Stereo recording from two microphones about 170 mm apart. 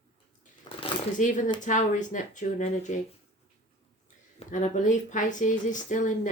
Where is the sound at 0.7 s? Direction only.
25° left (ahead or behind).